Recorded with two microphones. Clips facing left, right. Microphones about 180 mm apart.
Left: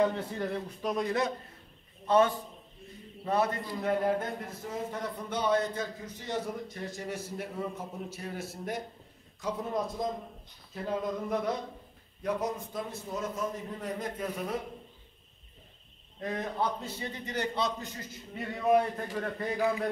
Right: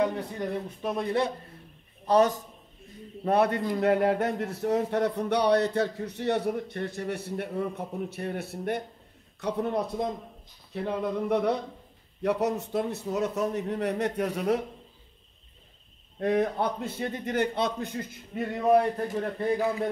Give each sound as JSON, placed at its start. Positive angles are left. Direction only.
{"t": 0.0, "sound": "a man's voice", "side_deg": -20}
{"t": 3.3, "sound": "a man's voice", "side_deg": -65}
{"t": 16.2, "sound": "a man's voice", "side_deg": -65}
{"t": 18.6, "sound": "a man's voice", "side_deg": -40}